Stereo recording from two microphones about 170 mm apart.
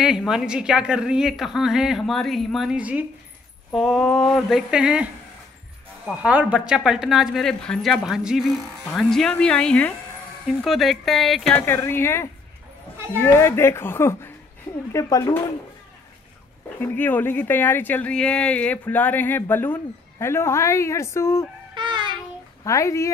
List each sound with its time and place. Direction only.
0.0 s a woman's voice: centre (ahead or behind)
11.5 s speech: 10° left (ahead or behind)
16.8 s speech: 10° left (ahead or behind)
21.7 s child singing: 25° right (ahead or behind)
22.6 s speech: 20° left (ahead or behind)